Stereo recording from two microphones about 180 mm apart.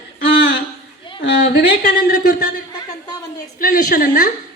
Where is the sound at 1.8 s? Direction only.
45° left (ahead or behind).